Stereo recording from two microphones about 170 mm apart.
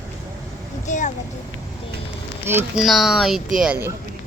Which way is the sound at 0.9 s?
45° left (ahead or behind).